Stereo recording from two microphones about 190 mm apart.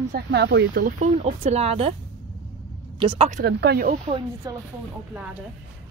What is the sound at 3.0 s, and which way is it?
Speech, 25° right (ahead or behind).